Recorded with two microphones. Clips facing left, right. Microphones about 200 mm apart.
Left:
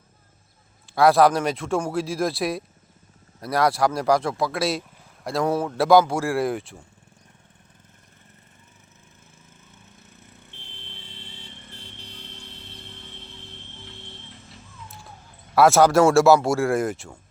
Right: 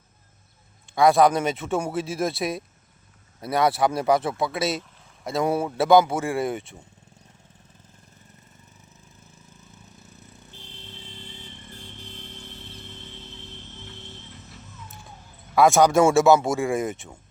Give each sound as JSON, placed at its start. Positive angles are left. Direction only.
{"t": 0.9, "sound": "speech", "side_deg": 0}
{"t": 10.5, "sound": "vehicle", "side_deg": -40}
{"t": 11.7, "sound": "vehicle", "side_deg": -50}
{"t": 15.5, "sound": "speech", "side_deg": 0}